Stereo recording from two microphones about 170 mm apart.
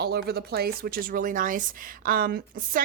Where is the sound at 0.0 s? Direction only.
70° right (ahead or behind).